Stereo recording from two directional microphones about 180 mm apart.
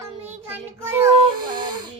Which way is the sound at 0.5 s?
15° right (ahead or behind).